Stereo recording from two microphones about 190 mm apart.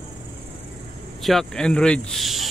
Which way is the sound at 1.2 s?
5° left (ahead or behind).